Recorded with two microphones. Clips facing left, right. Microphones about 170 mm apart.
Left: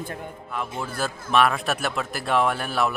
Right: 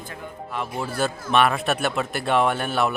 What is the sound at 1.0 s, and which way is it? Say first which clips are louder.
Speech: right 1 dB; centre (ahead or behind).